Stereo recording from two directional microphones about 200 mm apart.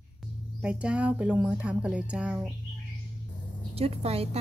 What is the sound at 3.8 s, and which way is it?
Speech, 30° right (ahead or behind).